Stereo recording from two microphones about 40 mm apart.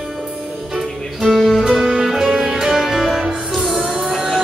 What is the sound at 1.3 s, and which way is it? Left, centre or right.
Music, centre.